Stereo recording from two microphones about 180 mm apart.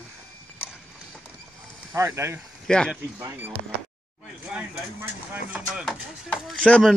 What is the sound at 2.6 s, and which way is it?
Speech, 5° left (ahead or behind).